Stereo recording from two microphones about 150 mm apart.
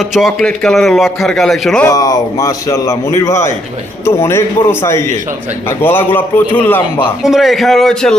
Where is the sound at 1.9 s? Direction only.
25° left (ahead or behind).